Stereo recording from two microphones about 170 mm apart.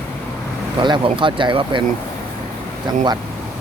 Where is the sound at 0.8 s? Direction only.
30° right (ahead or behind).